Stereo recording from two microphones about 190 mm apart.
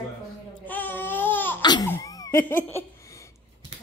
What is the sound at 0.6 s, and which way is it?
Baby cry, 10° left (ahead or behind).